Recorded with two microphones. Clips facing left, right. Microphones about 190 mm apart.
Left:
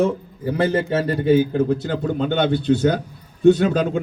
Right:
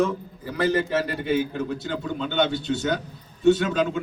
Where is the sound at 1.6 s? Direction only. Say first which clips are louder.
Left 8 dB; 50° left (ahead or behind).